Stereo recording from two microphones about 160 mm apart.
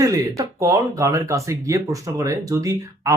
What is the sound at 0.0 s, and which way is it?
Speech, 20° right (ahead or behind).